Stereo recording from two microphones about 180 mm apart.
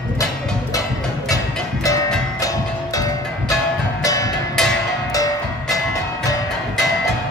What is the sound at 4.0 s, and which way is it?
Music, 20° left (ahead or behind).